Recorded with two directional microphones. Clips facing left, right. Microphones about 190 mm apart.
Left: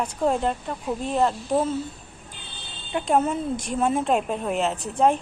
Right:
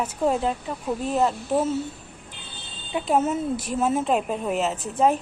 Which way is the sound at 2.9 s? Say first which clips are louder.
Even; centre (ahead or behind).